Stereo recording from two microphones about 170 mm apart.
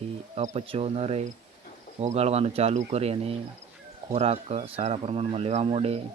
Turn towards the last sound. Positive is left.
turn(degrees=-35)  # may be behind; listen again after turning